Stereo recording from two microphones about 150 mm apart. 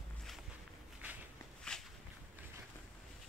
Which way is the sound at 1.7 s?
5° left (ahead or behind).